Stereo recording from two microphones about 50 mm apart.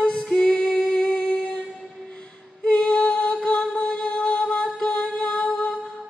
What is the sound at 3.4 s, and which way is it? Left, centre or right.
Music, left.